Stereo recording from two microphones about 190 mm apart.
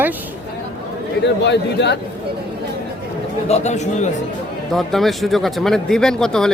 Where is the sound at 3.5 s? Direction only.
35° left (ahead or behind).